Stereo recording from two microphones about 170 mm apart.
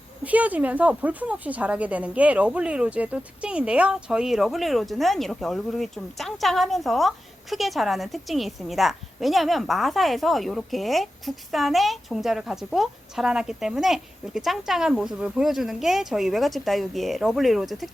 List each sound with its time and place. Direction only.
0.3 s a woman's voice: 10° right (ahead or behind)